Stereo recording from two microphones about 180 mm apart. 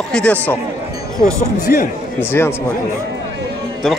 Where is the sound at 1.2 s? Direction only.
55° left (ahead or behind).